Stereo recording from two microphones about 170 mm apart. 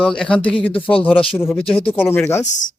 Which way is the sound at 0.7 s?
30° left (ahead or behind).